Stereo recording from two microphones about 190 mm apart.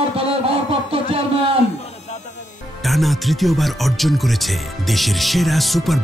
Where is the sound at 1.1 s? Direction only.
30° right (ahead or behind).